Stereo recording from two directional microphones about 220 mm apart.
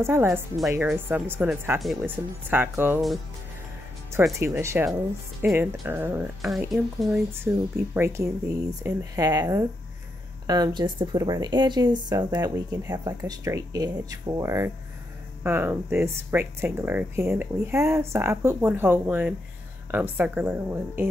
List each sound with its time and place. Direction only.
0.0 s speech: 10° right (ahead or behind)
4.4 s speech: 10° right (ahead or behind)